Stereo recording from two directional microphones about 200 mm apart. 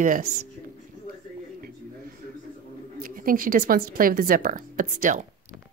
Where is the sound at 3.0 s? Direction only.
45° right (ahead or behind).